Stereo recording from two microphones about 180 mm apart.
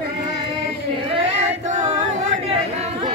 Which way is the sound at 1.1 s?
35° right (ahead or behind).